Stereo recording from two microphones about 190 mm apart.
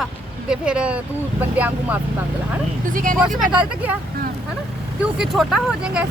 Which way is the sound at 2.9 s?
45° right (ahead or behind).